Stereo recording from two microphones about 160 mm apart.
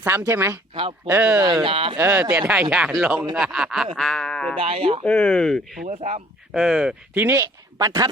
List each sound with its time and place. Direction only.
0.0 s speech: 15° right (ahead or behind)
0.7 s speech: 35° right (ahead or behind)
1.0 s speech: 15° right (ahead or behind)
1.6 s speech: 35° right (ahead or behind)
2.0 s speech: 15° right (ahead or behind); by 4.5 s 5° left (ahead or behind)
4.5 s speech: 35° right (ahead or behind)
5.0 s speech: 5° left (ahead or behind)
5.8 s speech: 40° right (ahead or behind)
6.5 s speech: centre (ahead or behind); by 8.1 s 20° right (ahead or behind)